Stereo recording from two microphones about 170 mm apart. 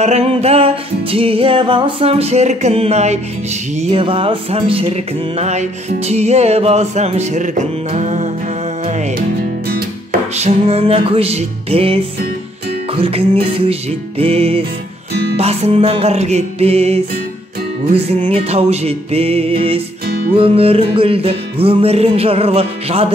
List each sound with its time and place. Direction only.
0.0 s music: 40° right (ahead or behind)
10.3 s music: 40° right (ahead or behind)
18.3 s music: 35° right (ahead or behind)